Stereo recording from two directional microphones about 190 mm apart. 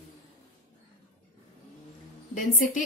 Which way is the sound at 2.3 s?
40° left (ahead or behind).